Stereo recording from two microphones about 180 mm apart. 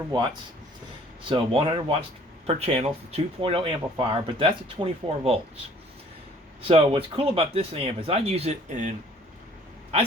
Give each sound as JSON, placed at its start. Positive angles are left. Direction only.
{"t": 1.3, "sound": "speech", "side_deg": -30}
{"t": 6.7, "sound": "speech", "side_deg": -30}